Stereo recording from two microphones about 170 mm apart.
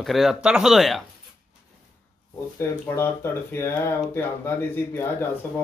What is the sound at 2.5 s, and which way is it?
Speech, 15° left (ahead or behind).